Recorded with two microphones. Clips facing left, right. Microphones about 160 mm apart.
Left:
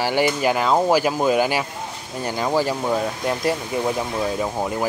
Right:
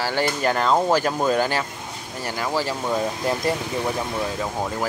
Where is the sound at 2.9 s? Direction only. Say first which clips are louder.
Left 1 dB; centre (ahead or behind).